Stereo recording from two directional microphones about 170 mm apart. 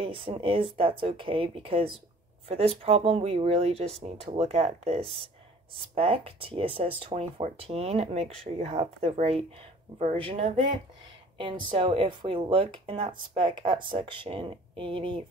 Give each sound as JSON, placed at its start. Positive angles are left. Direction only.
{"t": 0.0, "sound": "speech", "side_deg": -30}